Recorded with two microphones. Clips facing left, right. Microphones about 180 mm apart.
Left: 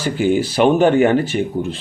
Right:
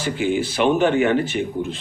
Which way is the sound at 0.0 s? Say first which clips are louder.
Left 4 dB; 40° left (ahead or behind).